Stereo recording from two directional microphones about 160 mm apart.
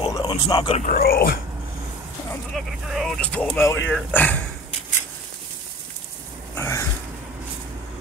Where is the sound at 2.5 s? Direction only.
Centre (ahead or behind).